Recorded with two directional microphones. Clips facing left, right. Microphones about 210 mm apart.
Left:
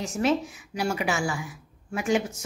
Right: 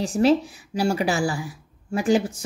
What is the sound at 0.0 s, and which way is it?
A woman's voice, 35° right (ahead or behind).